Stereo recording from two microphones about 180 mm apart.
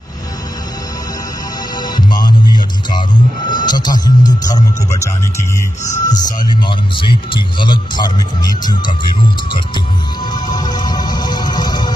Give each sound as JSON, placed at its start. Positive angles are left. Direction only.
{"t": 1.8, "sound": "music", "side_deg": 25}
{"t": 2.5, "sound": "speech", "side_deg": 25}
{"t": 10.3, "sound": "music", "side_deg": 25}